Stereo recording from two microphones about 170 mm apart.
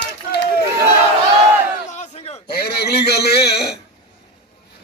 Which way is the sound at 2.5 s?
65° left (ahead or behind).